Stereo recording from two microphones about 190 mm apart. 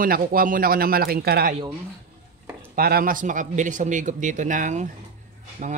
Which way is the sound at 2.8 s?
50° right (ahead or behind).